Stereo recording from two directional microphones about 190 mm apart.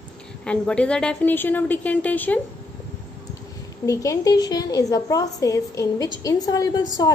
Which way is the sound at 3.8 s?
20° left (ahead or behind).